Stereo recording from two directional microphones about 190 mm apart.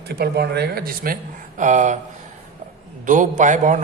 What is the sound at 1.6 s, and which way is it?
Speech, 40° right (ahead or behind).